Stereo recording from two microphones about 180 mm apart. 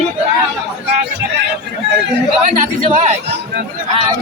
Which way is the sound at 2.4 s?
40° right (ahead or behind).